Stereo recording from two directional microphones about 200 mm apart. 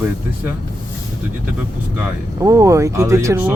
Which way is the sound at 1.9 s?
15° right (ahead or behind).